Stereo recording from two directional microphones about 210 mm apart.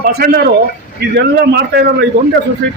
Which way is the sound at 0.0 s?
45° right (ahead or behind).